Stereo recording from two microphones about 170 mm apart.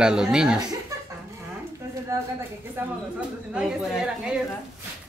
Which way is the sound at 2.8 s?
10° right (ahead or behind).